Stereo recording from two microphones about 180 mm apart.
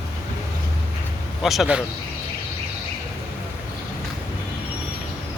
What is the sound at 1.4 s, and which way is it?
Speech, centre (ahead or behind).